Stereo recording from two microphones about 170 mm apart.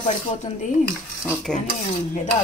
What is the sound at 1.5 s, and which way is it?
Speech, 5° left (ahead or behind).